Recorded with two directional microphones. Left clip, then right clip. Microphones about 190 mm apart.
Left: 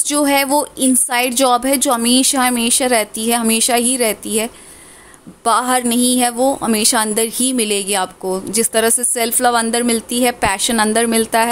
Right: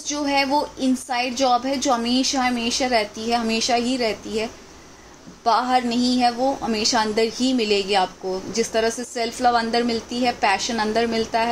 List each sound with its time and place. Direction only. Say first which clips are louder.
0.0 s a woman's voice: left 6 dB; 50° left (ahead or behind)